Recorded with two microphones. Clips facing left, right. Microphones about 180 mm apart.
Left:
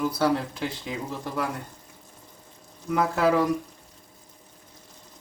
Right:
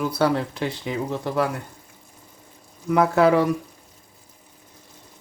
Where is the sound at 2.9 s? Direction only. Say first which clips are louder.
Right 6 dB; 65° right (ahead or behind).